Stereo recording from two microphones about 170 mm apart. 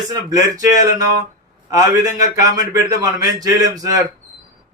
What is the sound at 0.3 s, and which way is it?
Speech, 20° right (ahead or behind).